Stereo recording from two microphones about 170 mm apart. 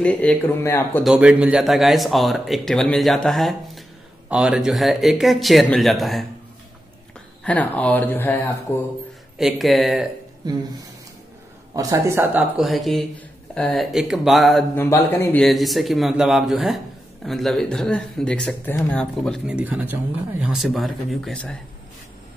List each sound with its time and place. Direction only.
0.0 s speech: 5° left (ahead or behind)
1.0 s speech: 5° right (ahead or behind)
7.4 s speech: 10° left (ahead or behind)
9.4 s speech: centre (ahead or behind)
10.4 s a woman's voice: 25° right (ahead or behind)
11.7 s speech: 20° right (ahead or behind); by 14.6 s centre (ahead or behind)
14.8 s speech: 15° left (ahead or behind)
15.4 s speech: centre (ahead or behind)